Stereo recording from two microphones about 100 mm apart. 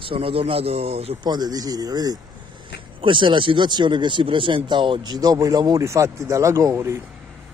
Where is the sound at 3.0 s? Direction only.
55° right (ahead or behind); by 7.0 s 25° right (ahead or behind).